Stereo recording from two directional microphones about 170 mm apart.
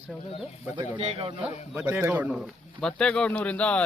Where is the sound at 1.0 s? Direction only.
35° right (ahead or behind).